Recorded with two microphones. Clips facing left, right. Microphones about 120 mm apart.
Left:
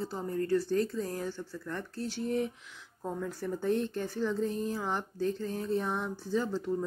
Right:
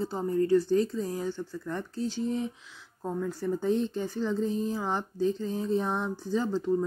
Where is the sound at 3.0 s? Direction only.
5° right (ahead or behind).